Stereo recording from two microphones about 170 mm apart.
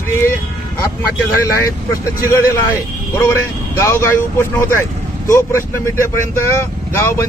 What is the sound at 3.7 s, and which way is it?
Speech, 15° left (ahead or behind).